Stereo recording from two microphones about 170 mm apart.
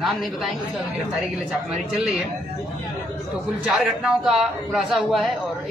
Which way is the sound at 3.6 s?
Centre (ahead or behind).